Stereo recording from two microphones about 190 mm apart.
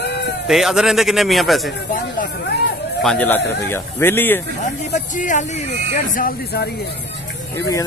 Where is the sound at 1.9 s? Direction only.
45° left (ahead or behind).